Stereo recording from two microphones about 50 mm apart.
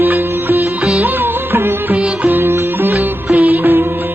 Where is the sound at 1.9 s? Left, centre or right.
Right.